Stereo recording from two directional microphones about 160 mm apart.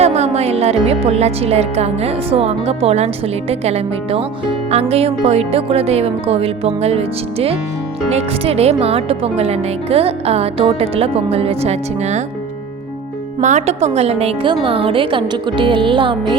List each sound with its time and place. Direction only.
0.0 s speech: 40° right (ahead or behind)
13.4 s speech: 50° right (ahead or behind); by 16.4 s 30° right (ahead or behind)